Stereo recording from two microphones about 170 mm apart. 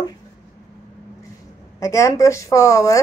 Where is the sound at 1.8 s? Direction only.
20° left (ahead or behind).